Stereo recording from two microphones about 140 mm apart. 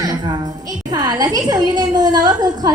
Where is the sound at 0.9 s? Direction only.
30° right (ahead or behind).